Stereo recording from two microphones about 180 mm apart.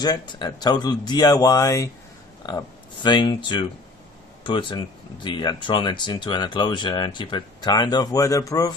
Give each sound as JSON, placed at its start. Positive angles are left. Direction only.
{"t": 0.0, "sound": "speech", "side_deg": 25}